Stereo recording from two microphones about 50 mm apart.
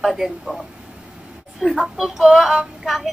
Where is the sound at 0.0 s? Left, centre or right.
Centre.